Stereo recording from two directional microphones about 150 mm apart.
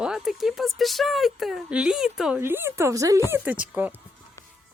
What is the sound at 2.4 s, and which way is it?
Speech, 15° right (ahead or behind).